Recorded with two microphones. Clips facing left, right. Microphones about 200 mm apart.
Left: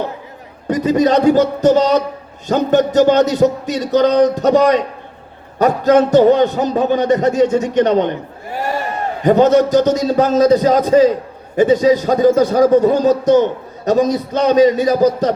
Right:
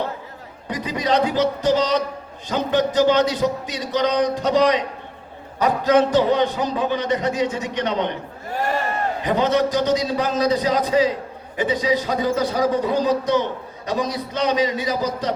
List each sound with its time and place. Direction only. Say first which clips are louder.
0.7 s a man's voice: left 9 dB; 45° left (ahead or behind)
9.2 s a man's voice: left 9 dB; 45° left (ahead or behind)